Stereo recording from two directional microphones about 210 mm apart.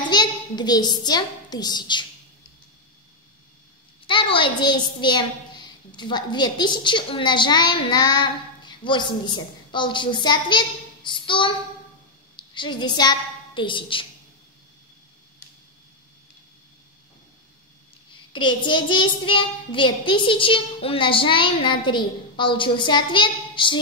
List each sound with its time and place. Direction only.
0.0 s a woman's voice: 20° left (ahead or behind)
4.1 s a child's voice: 25° left (ahead or behind)
18.3 s a child's voice: 20° left (ahead or behind)